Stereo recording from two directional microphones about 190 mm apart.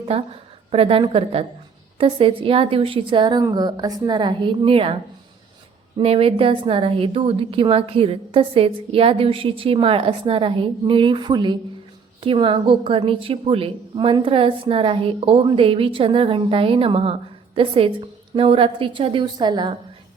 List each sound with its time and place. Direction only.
0.0 s a woman's voice: 30° right (ahead or behind)
6.0 s a woman's voice: 30° right (ahead or behind)